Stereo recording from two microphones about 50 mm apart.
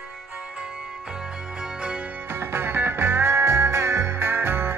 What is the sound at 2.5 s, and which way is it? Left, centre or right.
Music, right.